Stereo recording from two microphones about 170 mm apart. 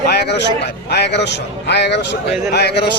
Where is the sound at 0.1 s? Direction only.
75° left (ahead or behind).